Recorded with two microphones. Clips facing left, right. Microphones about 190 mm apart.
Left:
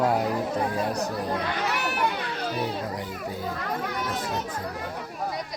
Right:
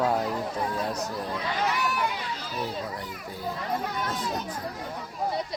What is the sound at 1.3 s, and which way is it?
Children playing, 65° left (ahead or behind).